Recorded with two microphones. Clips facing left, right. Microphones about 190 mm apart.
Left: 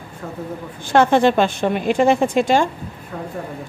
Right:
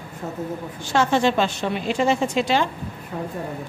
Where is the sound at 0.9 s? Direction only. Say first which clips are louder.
Left 5 dB; 55° left (ahead or behind).